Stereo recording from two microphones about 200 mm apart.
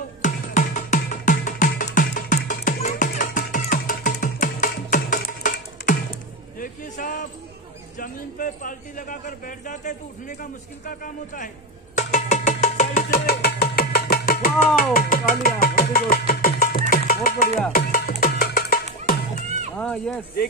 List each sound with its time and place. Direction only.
0.2 s music: 40° left (ahead or behind)
6.6 s a sound: 45° left (ahead or behind)
8.0 s speech: 40° left (ahead or behind)
12.0 s music: 35° left (ahead or behind)
14.8 s speech: 45° left (ahead or behind)
16.9 s music: 45° left (ahead or behind)
19.8 s speech: 5° left (ahead or behind)